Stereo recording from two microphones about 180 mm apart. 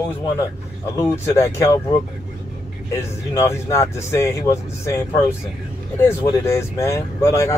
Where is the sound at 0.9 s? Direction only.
15° left (ahead or behind).